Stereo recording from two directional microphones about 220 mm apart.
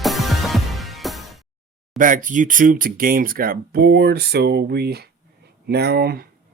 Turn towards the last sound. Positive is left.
turn(degrees=-45)  # may be behind; listen again after turning